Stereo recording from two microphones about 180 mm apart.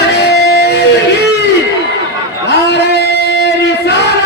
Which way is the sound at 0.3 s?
65° left (ahead or behind).